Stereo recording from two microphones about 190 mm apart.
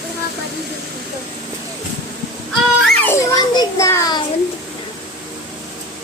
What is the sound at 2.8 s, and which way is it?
Children playing, 10° left (ahead or behind).